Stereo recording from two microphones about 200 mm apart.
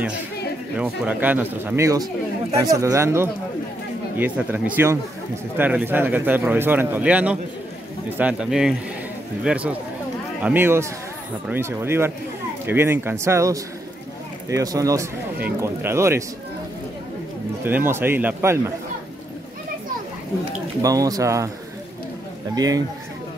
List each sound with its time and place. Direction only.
0.7 s speech: 5° right (ahead or behind)
17.6 s speech: 10° right (ahead or behind)
20.8 s speech: 15° right (ahead or behind)
22.6 s speech: 20° right (ahead or behind)